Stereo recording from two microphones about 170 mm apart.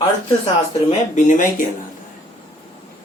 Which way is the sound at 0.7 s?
40° left (ahead or behind).